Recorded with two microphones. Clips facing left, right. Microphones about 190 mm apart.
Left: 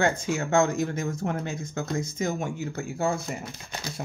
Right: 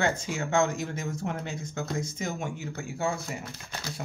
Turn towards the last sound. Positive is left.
turn(degrees=15)  # may be behind; listen again after turning